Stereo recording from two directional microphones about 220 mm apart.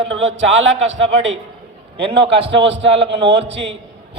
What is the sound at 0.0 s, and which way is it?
A man's voice, 60° right (ahead or behind).